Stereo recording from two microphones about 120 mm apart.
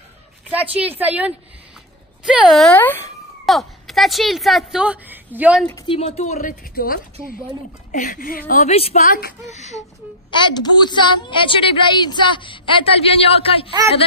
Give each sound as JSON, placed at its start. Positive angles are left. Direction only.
{"t": 0.5, "sound": "a woman's voice", "side_deg": -10}
{"t": 2.7, "sound": "speech", "side_deg": 15}
{"t": 3.4, "sound": "a woman's voice", "side_deg": 0}
{"t": 5.9, "sound": "a woman's voice", "side_deg": 60}
{"t": 7.9, "sound": "a woman's voice", "side_deg": 90}
{"t": 9.5, "sound": "a woman's voice", "side_deg": 70}
{"t": 10.4, "sound": "a woman's voice", "side_deg": 40}